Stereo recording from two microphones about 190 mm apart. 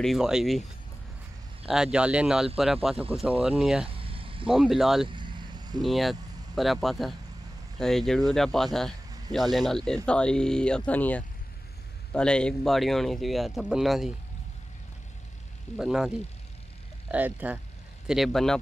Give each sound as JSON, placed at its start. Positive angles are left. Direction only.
{"t": 0.0, "sound": "speech", "side_deg": 0}
{"t": 1.7, "sound": "speech", "side_deg": -5}
{"t": 3.9, "sound": "vehicle", "side_deg": -30}
{"t": 4.5, "sound": "speech", "side_deg": 0}
{"t": 5.0, "sound": "vehicle", "side_deg": -25}
{"t": 5.8, "sound": "speech", "side_deg": 0}
{"t": 15.8, "sound": "speech", "side_deg": -5}